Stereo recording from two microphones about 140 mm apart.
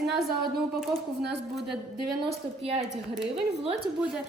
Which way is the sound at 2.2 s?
45° right (ahead or behind).